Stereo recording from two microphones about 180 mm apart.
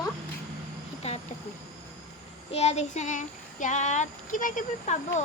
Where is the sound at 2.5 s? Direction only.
35° left (ahead or behind).